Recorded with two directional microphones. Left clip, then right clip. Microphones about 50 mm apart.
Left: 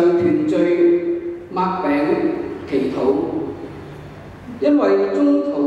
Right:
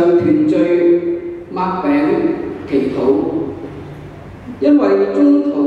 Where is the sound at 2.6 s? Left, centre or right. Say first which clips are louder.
Right 4 dB; left.